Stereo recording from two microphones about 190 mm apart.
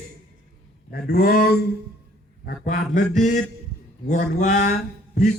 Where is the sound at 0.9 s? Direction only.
50° left (ahead or behind).